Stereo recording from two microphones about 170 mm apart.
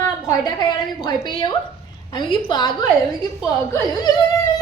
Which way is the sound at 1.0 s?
25° left (ahead or behind).